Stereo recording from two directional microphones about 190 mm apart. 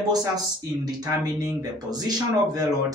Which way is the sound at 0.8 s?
20° right (ahead or behind).